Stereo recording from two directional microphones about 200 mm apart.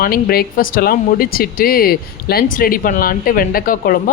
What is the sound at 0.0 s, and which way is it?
Speech, 45° left (ahead or behind).